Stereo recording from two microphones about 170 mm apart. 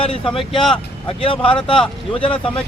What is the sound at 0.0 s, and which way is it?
Speech, 35° left (ahead or behind).